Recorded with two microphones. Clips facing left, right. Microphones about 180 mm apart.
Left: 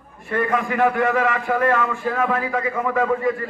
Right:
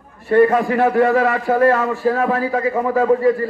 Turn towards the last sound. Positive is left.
turn(degrees=-35)  # may be behind; listen again after turning